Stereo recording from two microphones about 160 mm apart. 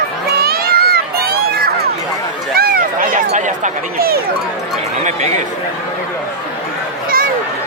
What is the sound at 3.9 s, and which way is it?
Speech, 70° right (ahead or behind).